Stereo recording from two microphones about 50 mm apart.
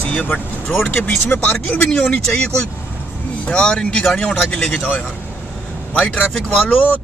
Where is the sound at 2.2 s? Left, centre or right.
Centre.